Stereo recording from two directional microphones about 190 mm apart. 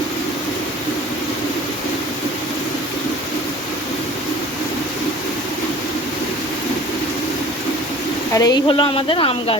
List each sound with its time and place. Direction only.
8.4 s speech: 20° left (ahead or behind)